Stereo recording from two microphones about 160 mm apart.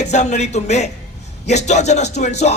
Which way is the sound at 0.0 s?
45° left (ahead or behind).